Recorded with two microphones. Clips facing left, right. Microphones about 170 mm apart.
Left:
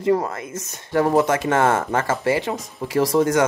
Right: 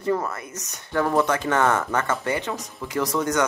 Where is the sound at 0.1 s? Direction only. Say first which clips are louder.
Left 4 dB; 30° left (ahead or behind).